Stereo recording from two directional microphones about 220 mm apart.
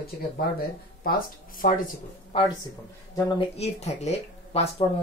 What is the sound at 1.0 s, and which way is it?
Speech, 40° left (ahead or behind).